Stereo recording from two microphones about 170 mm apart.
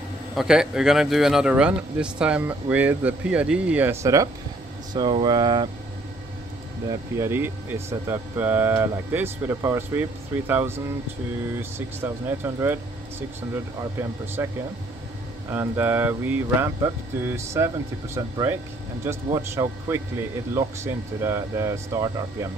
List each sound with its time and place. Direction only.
0.4 s speech: 5° right (ahead or behind); by 5.7 s 25° right (ahead or behind)
6.9 s speech: 15° right (ahead or behind)
12.0 s speech: 15° right (ahead or behind)
13.7 s speech: 15° right (ahead or behind)
15.5 s speech: 10° right (ahead or behind)